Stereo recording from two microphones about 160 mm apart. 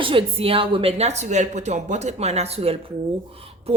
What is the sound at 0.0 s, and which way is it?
A woman's voice, 35° right (ahead or behind).